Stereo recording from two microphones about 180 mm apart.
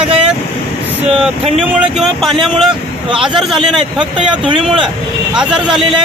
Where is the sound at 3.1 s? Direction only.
25° right (ahead or behind).